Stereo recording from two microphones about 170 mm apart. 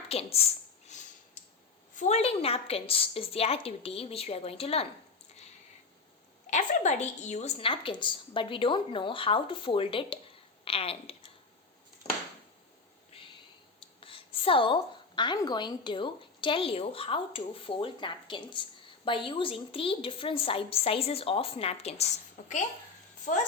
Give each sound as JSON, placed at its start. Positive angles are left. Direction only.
{"t": 0.1, "sound": "a woman's voice", "side_deg": 35}
{"t": 0.9, "sound": "a sound", "side_deg": 45}
{"t": 2.0, "sound": "a woman's voice", "side_deg": 40}
{"t": 6.5, "sound": "a woman's voice", "side_deg": 45}
{"t": 14.0, "sound": "a woman's voice", "side_deg": 30}